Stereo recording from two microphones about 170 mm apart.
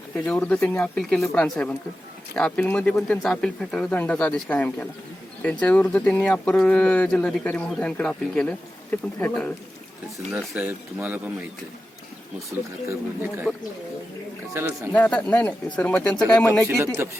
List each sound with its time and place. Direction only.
0.3 s speech: 5° left (ahead or behind)
10.2 s speech: 5° right (ahead or behind)
12.9 s speech: 10° right (ahead or behind)
14.5 s speech: 15° right (ahead or behind)
14.9 s speech: 10° left (ahead or behind)
16.6 s speech: 15° right (ahead or behind)